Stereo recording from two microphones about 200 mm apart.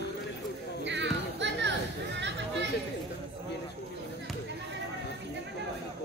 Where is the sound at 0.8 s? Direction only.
60° right (ahead or behind).